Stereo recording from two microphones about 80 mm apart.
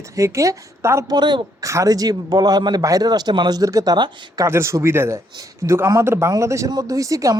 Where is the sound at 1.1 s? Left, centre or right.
Right.